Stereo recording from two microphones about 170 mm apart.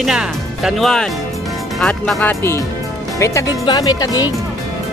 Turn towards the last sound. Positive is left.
turn(degrees=20)  # may be behind; listen again after turning